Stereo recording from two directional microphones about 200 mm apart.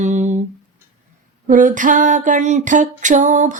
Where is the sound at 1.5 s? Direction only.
40° right (ahead or behind).